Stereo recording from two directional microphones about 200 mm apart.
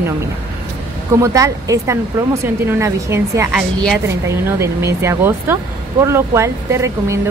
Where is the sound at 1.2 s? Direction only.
15° right (ahead or behind).